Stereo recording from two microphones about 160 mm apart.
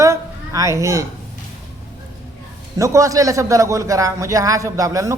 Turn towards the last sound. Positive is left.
turn(degrees=-20)  # may be behind; listen again after turning